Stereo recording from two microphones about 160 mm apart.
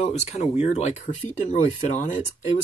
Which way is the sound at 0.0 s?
45° left (ahead or behind).